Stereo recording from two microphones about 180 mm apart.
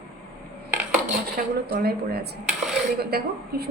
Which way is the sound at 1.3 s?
60° right (ahead or behind).